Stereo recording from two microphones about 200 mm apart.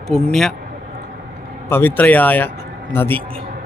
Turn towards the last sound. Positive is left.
turn(degrees=10)  # may be behind; listen again after turning